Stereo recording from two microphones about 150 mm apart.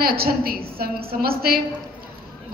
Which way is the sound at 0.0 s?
90° right.